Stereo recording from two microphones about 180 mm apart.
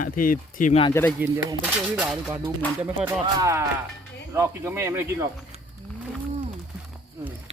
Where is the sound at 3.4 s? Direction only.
15° right (ahead or behind).